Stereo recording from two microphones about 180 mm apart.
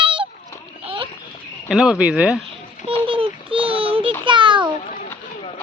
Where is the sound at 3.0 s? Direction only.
30° right (ahead or behind).